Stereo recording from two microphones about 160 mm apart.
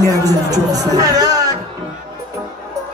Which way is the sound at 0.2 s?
25° right (ahead or behind).